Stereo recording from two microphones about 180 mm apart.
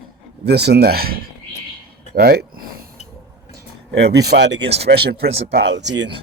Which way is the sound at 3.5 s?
65° right (ahead or behind).